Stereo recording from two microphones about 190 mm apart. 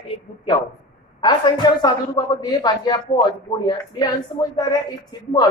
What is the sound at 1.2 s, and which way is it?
Speech, 25° left (ahead or behind).